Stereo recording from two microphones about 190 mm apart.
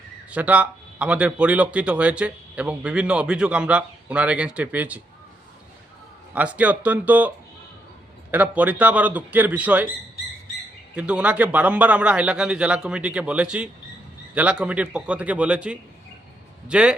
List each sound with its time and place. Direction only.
0.3 s speech: 5° right (ahead or behind)
6.3 s speech: 5° right (ahead or behind)
10.9 s a man's voice: 5° right (ahead or behind)